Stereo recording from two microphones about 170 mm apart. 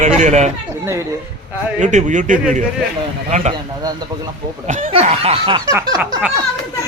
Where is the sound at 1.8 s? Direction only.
45° right (ahead or behind).